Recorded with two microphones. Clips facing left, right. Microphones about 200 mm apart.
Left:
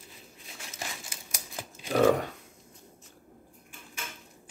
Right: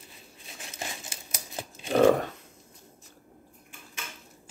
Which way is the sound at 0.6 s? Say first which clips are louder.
Right 2 dB; 25° right (ahead or behind).